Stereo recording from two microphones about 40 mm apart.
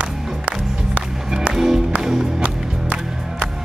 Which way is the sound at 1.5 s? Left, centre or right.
Centre.